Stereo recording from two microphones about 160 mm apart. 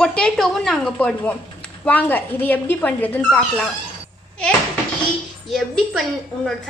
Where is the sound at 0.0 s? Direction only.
5° left (ahead or behind).